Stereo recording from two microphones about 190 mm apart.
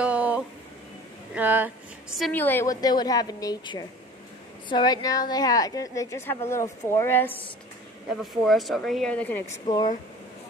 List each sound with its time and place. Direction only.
0.0 s a sound: 5° right (ahead or behind)
1.3 s speech: 10° right (ahead or behind)
2.1 s a woman's voice: 5° left (ahead or behind)
8.2 s speech: centre (ahead or behind)